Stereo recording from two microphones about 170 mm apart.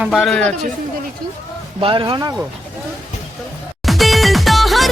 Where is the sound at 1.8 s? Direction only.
30° right (ahead or behind).